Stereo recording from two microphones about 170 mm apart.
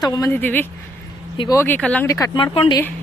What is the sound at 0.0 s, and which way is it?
Speech, 20° left (ahead or behind).